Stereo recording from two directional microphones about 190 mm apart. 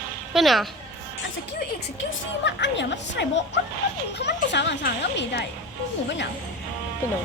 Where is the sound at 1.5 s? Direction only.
70° left (ahead or behind).